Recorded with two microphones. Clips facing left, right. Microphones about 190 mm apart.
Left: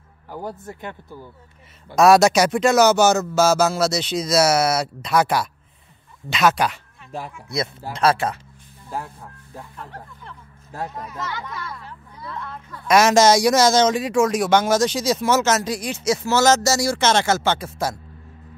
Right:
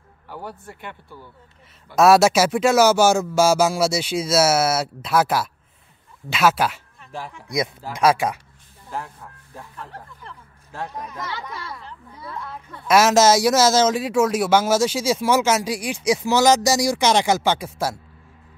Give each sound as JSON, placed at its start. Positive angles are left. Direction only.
{"t": 0.6, "sound": "speech", "side_deg": 40}
{"t": 2.0, "sound": "speech", "side_deg": -5}
{"t": 9.8, "sound": "speech", "side_deg": 0}
{"t": 12.8, "sound": "speech", "side_deg": -5}